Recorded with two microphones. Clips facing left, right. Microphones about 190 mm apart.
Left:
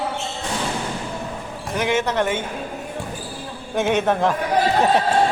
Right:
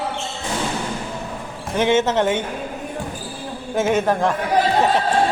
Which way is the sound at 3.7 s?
Centre (ahead or behind).